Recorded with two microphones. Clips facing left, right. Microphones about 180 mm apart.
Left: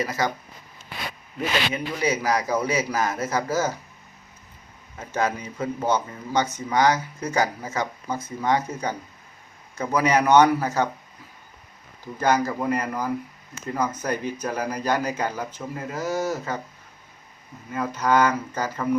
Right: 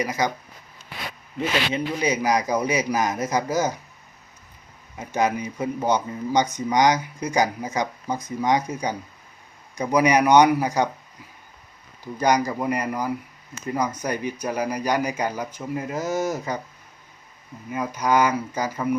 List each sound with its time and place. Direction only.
0.0 s speech: 15° right (ahead or behind)
1.4 s speech: 20° right (ahead or behind)
4.9 s speech: 15° right (ahead or behind)
12.2 s speech: 15° right (ahead or behind)
17.7 s speech: 10° right (ahead or behind)